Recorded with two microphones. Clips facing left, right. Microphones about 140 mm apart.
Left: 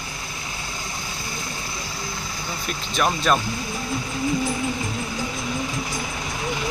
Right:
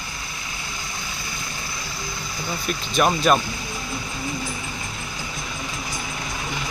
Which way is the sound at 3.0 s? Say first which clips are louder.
Right 2 dB; 10° right (ahead or behind).